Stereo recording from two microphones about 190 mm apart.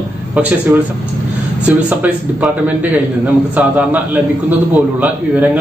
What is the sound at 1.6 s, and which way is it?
A man's voice, 5° right (ahead or behind).